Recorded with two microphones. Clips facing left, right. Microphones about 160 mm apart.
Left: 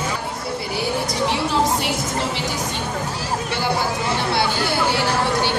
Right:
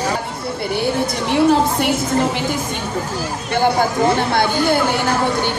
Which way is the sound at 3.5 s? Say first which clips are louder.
Right 9 dB; 50° right (ahead or behind).